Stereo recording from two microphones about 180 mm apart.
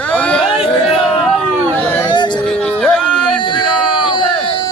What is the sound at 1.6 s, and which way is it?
Speech, 10° left (ahead or behind).